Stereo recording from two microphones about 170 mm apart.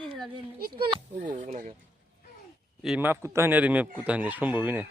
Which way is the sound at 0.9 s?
35° right (ahead or behind).